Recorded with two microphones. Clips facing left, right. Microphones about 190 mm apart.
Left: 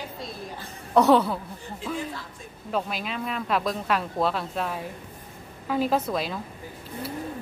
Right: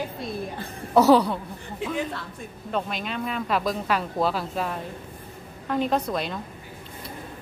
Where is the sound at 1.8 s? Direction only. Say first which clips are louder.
Right 3 dB; 60° right (ahead or behind).